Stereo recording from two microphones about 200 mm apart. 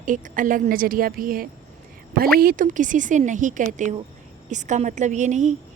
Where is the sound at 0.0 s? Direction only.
40° right (ahead or behind).